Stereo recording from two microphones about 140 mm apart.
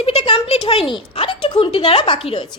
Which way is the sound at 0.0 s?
45° left (ahead or behind).